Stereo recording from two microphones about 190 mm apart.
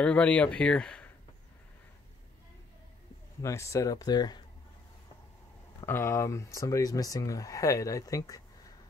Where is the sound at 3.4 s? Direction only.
15° left (ahead or behind).